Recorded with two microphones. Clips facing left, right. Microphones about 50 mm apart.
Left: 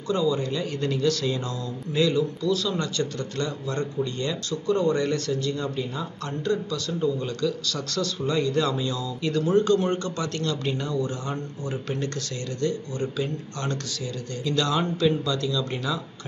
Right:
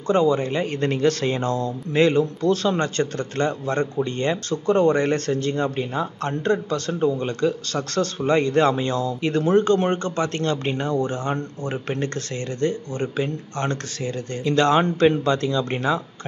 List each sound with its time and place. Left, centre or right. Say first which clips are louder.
0.1 s speech: right 5 dB; right